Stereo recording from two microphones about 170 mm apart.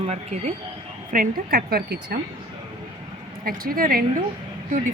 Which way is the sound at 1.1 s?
60° right (ahead or behind).